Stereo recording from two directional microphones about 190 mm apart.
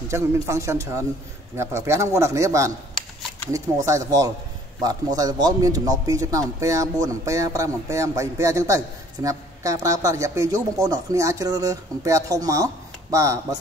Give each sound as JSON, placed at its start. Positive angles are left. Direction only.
{"t": 0.1, "sound": "speech", "side_deg": -15}